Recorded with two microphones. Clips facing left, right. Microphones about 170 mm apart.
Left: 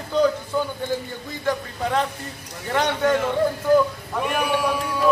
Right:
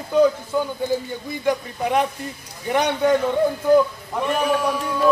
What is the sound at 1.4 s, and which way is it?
Speech, 15° right (ahead or behind).